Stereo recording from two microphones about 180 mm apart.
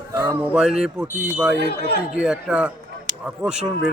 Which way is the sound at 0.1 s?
20° right (ahead or behind).